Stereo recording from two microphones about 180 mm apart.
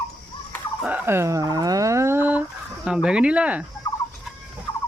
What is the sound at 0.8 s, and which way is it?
Fowl, 5° right (ahead or behind).